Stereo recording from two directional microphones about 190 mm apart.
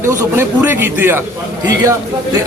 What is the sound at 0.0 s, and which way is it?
A man's voice, 15° right (ahead or behind).